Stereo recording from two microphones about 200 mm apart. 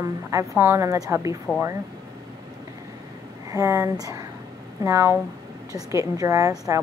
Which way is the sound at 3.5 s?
15° right (ahead or behind).